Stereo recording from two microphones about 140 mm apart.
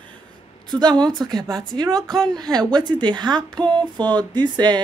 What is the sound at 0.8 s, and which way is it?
Speech, 30° right (ahead or behind).